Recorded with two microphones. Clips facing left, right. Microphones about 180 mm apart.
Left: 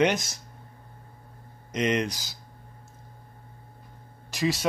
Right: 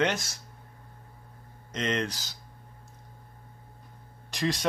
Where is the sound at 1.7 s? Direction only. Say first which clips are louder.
Left 4 dB; 15° left (ahead or behind).